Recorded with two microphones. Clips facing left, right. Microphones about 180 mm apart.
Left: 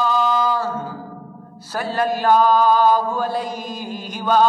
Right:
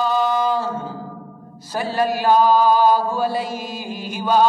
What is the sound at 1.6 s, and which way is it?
Mantra, 10° right (ahead or behind).